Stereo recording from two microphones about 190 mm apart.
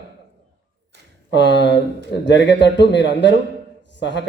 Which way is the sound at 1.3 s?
65° left (ahead or behind).